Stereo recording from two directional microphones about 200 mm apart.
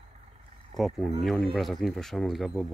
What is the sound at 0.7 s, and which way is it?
Speech, centre (ahead or behind).